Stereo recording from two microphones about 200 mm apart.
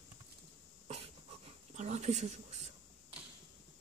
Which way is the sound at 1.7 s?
35° right (ahead or behind).